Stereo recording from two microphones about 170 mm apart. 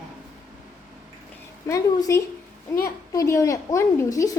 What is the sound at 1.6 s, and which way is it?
A woman's voice, 20° left (ahead or behind).